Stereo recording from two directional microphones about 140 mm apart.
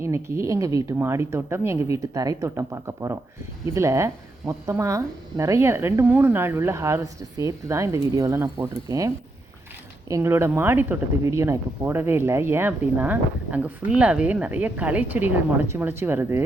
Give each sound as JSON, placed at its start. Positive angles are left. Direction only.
{"t": 0.0, "sound": "a woman's voice", "side_deg": -20}